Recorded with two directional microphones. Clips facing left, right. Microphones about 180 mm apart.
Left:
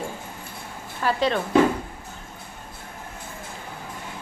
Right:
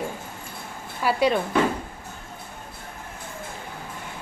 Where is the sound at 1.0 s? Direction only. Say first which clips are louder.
Right 2 dB; 10° right (ahead or behind).